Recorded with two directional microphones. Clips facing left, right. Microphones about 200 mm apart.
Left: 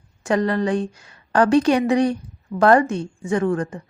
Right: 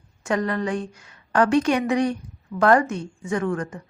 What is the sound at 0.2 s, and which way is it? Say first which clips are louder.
A woman's voice: left 4 dB; 35° left (ahead or behind).